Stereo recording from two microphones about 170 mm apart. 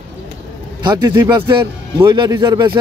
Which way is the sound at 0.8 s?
25° right (ahead or behind).